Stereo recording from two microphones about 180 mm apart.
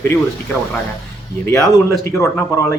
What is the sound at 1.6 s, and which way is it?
Speech, centre (ahead or behind).